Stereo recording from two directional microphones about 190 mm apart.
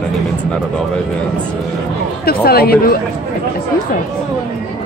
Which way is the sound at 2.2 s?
55° left (ahead or behind).